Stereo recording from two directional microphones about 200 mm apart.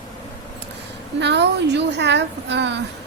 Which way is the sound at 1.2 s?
60° right (ahead or behind).